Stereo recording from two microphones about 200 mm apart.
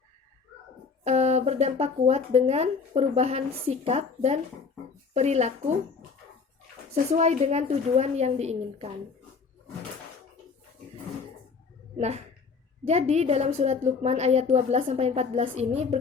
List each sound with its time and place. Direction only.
1.0 s speech: 35° right (ahead or behind)
6.9 s speech: 35° right (ahead or behind)
11.9 s speech: 35° right (ahead or behind)